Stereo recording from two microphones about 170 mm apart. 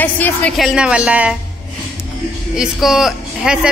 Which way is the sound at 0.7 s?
5° right (ahead or behind).